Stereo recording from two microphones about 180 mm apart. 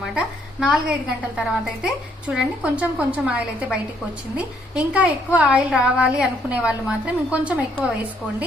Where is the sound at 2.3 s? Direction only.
5° right (ahead or behind).